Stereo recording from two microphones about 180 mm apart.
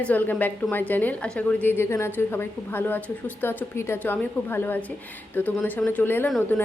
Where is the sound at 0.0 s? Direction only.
10° left (ahead or behind).